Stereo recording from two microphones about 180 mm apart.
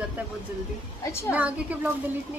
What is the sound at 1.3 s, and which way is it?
Speech, 10° right (ahead or behind).